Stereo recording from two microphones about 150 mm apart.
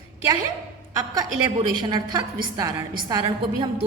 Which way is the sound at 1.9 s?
30° right (ahead or behind).